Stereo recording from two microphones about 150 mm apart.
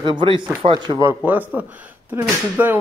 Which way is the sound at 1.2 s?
10° right (ahead or behind).